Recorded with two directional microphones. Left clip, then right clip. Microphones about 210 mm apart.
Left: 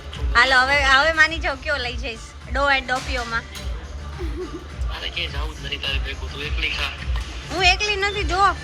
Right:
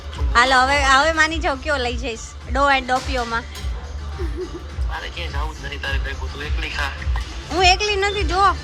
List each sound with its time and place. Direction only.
0.3 s a woman's voice: 15° right (ahead or behind)
4.9 s a woman's voice: 10° right (ahead or behind)